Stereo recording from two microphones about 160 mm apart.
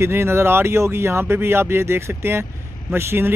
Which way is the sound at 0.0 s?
15° right (ahead or behind).